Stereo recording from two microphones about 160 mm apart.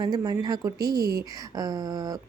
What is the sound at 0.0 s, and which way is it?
Speech, 25° right (ahead or behind).